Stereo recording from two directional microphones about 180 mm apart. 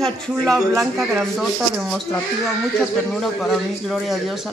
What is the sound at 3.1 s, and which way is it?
Speech, centre (ahead or behind).